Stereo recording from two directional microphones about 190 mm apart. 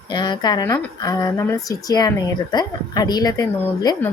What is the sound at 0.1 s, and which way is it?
Speech, 25° left (ahead or behind).